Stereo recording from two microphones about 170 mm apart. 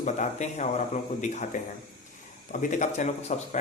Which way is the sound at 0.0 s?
45° left (ahead or behind).